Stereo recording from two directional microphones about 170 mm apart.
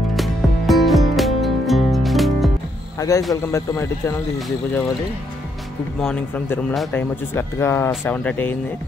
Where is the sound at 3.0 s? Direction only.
20° left (ahead or behind).